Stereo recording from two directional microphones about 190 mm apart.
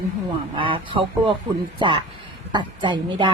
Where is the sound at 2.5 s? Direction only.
25° right (ahead or behind).